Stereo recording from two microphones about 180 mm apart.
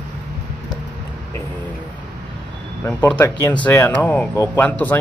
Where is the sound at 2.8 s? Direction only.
10° left (ahead or behind).